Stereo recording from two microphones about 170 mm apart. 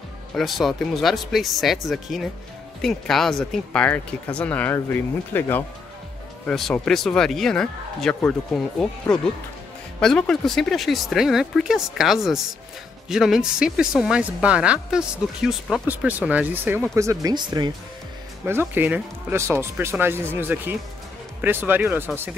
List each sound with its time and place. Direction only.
0.3 s speech: centre (ahead or behind); by 17.6 s 25° right (ahead or behind)
18.4 s speech: 10° right (ahead or behind)